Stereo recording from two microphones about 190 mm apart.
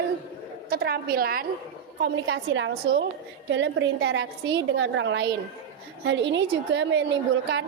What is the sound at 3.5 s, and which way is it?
A woman's voice, 70° right (ahead or behind).